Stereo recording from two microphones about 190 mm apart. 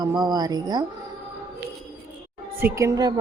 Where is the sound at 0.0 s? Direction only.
20° right (ahead or behind).